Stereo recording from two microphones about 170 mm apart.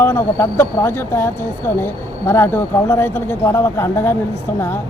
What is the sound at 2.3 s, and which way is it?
Speech, 15° left (ahead or behind).